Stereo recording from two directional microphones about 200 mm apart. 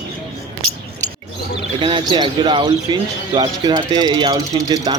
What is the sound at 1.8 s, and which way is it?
Speech, 25° right (ahead or behind).